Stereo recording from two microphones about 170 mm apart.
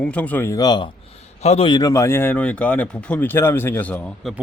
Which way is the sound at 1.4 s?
35° left (ahead or behind).